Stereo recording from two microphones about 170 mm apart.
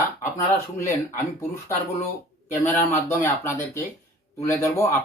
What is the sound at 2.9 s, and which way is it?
Speech, 15° left (ahead or behind).